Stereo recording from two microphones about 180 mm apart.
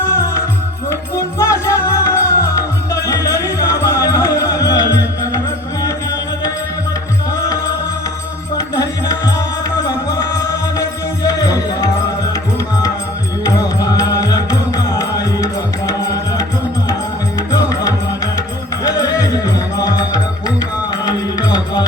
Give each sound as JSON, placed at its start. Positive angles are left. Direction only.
{"t": 0.9, "sound": "music", "side_deg": 15}
{"t": 8.5, "sound": "music", "side_deg": 20}
{"t": 13.4, "sound": "music", "side_deg": 20}
{"t": 17.3, "sound": "music", "side_deg": 20}